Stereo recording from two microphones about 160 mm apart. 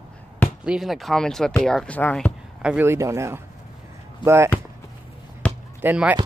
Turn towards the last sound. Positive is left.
turn(degrees=-10)  # may be behind; listen again after turning